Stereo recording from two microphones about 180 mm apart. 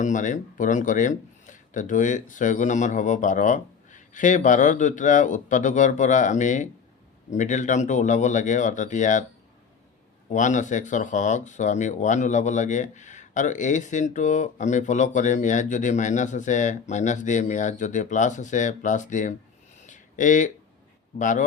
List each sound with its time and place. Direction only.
0.0 s speech: 45° left (ahead or behind)
10.2 s speech: 45° left (ahead or behind)
19.9 s a sound: 45° left (ahead or behind)
21.2 s speech: 45° left (ahead or behind)